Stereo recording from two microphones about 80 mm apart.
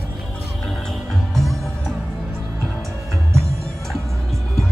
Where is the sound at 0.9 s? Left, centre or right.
Centre.